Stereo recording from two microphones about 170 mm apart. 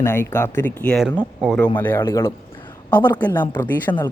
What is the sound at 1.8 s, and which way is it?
Speech, 15° left (ahead or behind).